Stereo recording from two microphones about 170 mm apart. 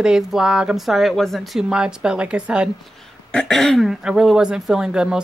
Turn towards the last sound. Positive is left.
turn(degrees=-5)  # may be behind; listen again after turning